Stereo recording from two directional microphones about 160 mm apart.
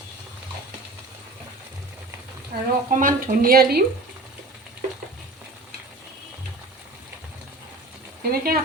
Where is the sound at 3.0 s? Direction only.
55° right (ahead or behind).